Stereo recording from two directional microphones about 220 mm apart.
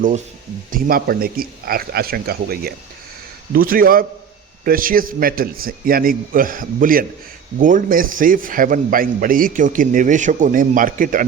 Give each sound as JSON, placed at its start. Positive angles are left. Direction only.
{"t": 0.7, "sound": "a man's voice", "side_deg": -40}